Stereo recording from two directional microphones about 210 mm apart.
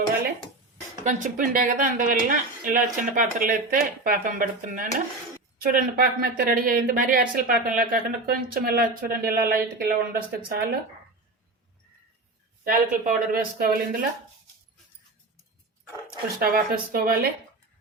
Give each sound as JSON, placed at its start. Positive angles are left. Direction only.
{"t": 1.0, "sound": "a woman's voice", "side_deg": -40}
{"t": 12.6, "sound": "speech", "side_deg": -40}
{"t": 16.4, "sound": "speech", "side_deg": -45}